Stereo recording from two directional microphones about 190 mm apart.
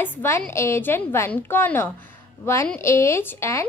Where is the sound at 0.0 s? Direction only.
10° left (ahead or behind).